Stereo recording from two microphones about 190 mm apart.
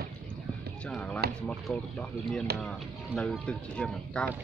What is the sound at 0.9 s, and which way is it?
Speech, 5° left (ahead or behind).